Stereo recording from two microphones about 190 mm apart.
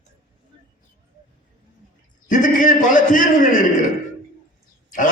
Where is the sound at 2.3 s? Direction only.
45° left (ahead or behind).